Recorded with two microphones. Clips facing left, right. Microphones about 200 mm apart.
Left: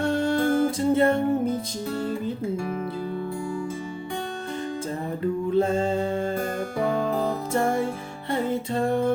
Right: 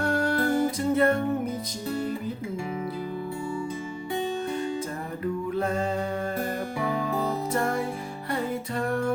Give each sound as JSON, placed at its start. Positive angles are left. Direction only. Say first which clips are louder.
{"t": 0.0, "sound": "music", "louder": "left 3 dB", "side_deg": 25}
{"t": 5.5, "sound": "a sound", "louder": "left 6 dB", "side_deg": 25}
{"t": 7.5, "sound": "music", "louder": "left 3 dB", "side_deg": 25}